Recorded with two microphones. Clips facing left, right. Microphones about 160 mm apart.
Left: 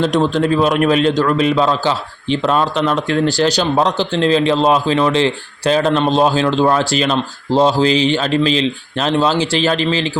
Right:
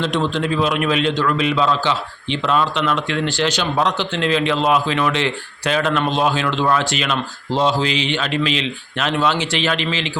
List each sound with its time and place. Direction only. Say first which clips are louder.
0.0 s a man's voice: left 5 dB; 40° left (ahead or behind)